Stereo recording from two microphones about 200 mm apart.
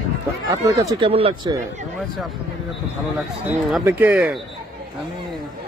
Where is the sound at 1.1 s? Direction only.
30° right (ahead or behind).